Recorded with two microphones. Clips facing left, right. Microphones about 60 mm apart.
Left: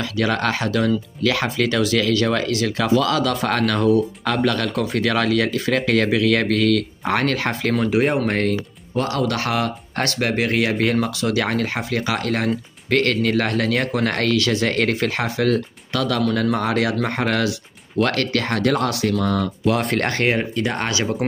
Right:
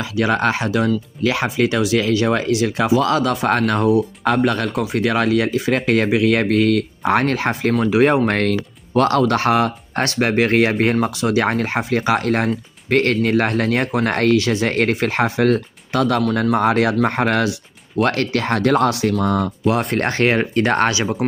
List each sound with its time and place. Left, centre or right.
0.0 s speech: right
4.7 s speech: centre
5.0 s speech: right
7.9 s speech: right
8.3 s speech: right
9.3 s speech: right
20.5 s speech: right
20.9 s speech: centre